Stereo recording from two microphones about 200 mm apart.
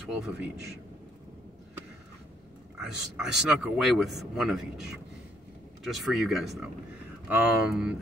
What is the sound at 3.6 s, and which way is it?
Speech, 5° right (ahead or behind).